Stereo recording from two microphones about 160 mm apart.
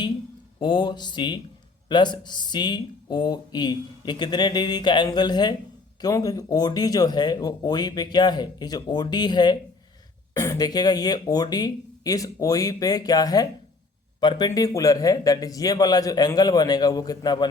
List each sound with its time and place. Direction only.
0.6 s speech: 30° left (ahead or behind)